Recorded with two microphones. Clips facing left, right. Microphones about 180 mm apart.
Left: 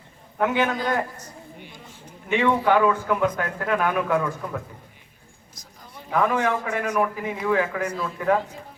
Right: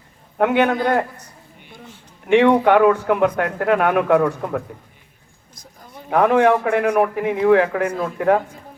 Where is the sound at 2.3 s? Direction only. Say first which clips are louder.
Right 7 dB; 70° right (ahead or behind).